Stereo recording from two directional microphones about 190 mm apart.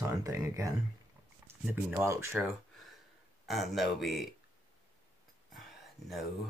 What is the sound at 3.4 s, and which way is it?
Speech, centre (ahead or behind).